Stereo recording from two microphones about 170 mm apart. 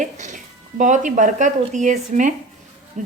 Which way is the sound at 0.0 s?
45° right (ahead or behind).